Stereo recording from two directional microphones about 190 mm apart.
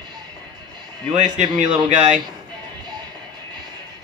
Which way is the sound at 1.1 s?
30° right (ahead or behind).